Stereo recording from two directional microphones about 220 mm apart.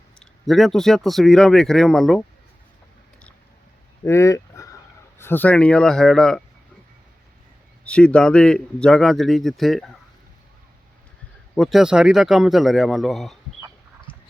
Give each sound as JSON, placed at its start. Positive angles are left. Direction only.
{"t": 0.2, "sound": "a man's voice", "side_deg": 0}
{"t": 4.0, "sound": "a sound", "side_deg": 10}
{"t": 5.1, "sound": "a man's voice", "side_deg": 10}
{"t": 7.9, "sound": "a man's voice", "side_deg": 5}
{"t": 11.5, "sound": "a man's voice", "side_deg": 0}
{"t": 14.1, "sound": "a sound", "side_deg": 25}